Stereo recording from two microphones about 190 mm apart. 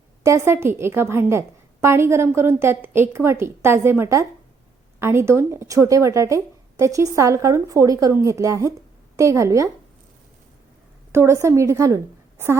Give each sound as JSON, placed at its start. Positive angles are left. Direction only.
{"t": 0.3, "sound": "a woman's voice", "side_deg": -15}
{"t": 11.1, "sound": "a woman's voice", "side_deg": -15}